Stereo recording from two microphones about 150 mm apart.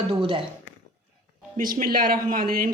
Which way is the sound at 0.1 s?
35° right (ahead or behind).